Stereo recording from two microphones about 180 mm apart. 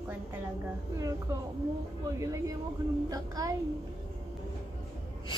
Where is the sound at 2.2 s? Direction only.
15° right (ahead or behind).